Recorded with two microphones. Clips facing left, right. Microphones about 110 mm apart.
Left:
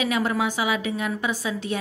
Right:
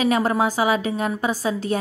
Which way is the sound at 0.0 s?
40° right (ahead or behind).